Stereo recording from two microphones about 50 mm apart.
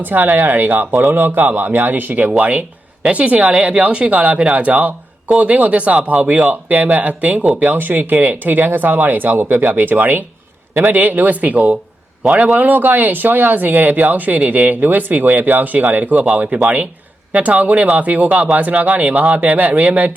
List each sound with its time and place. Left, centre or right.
0.0 s speech: right